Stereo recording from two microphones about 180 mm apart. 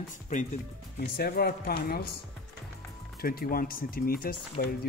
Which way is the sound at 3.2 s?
55° left (ahead or behind).